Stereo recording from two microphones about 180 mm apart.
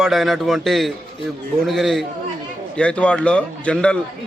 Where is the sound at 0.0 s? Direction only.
Centre (ahead or behind).